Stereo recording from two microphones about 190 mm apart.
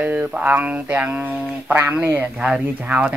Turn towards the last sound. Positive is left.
turn(degrees=-10)  # may be behind; listen again after turning